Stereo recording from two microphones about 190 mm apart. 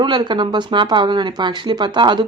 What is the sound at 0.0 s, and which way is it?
Speech, 25° right (ahead or behind).